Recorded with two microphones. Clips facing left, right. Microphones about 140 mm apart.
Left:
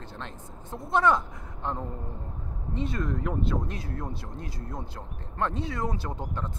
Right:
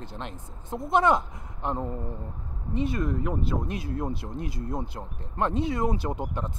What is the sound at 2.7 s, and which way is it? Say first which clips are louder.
Speech: right 3 dB; 10° right (ahead or behind).